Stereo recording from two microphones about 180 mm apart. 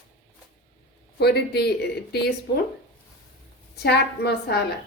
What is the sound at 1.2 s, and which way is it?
Speech, 65° left (ahead or behind).